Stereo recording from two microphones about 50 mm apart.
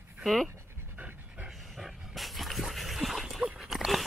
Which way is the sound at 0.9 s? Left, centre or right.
Right.